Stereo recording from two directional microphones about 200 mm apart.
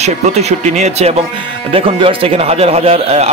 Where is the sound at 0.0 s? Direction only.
35° right (ahead or behind).